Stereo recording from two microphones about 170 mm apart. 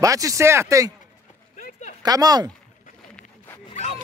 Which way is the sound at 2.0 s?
20° right (ahead or behind).